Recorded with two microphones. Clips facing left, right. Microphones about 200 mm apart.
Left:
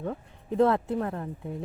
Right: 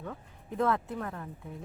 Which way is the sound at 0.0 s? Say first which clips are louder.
Left 8 dB; 35° left (ahead or behind).